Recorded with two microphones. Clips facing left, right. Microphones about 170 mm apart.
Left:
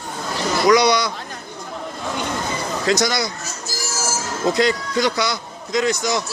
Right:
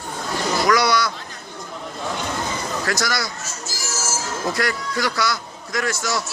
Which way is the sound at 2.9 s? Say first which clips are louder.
Left 7 dB; 20° left (ahead or behind).